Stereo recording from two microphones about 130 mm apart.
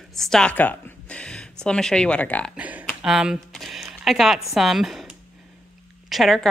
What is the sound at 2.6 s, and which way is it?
Speech, 10° right (ahead or behind).